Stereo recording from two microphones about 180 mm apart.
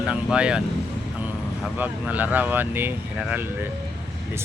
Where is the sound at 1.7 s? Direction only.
10° right (ahead or behind).